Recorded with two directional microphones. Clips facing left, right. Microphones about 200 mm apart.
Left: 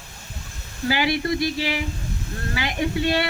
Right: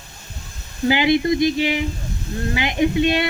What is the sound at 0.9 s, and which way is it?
Speech, 20° right (ahead or behind).